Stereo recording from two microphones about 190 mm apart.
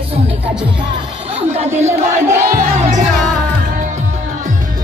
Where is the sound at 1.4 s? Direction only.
35° right (ahead or behind).